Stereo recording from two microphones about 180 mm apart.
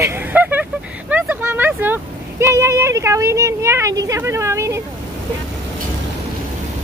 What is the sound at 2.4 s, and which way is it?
Speech, 15° right (ahead or behind).